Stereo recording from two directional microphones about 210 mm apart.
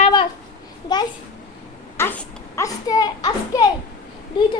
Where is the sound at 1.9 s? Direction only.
10° left (ahead or behind).